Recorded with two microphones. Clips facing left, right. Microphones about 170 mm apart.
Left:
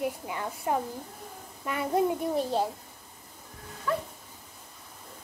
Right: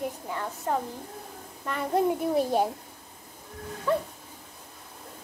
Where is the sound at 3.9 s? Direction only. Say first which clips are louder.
Right 4 dB; 25° right (ahead or behind).